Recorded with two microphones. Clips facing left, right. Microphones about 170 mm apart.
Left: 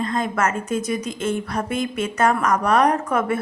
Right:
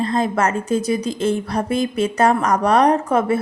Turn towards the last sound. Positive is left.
turn(degrees=-30)  # may be behind; listen again after turning